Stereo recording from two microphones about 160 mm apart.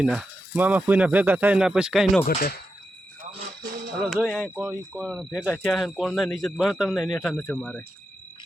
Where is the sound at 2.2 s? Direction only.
65° left (ahead or behind).